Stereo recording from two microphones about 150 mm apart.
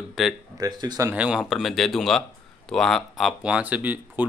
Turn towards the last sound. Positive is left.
turn(degrees=-10)  # may be behind; listen again after turning